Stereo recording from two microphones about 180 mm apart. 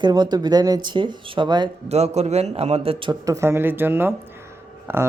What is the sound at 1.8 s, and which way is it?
A man's voice, 35° right (ahead or behind).